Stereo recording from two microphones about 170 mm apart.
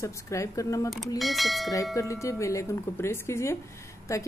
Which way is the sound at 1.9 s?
20° left (ahead or behind).